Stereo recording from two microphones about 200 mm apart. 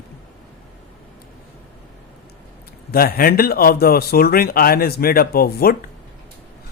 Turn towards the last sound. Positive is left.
turn(degrees=50)  # may be behind; listen again after turning